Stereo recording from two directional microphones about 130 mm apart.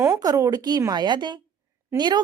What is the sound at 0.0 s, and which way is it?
Speech, 30° right (ahead or behind).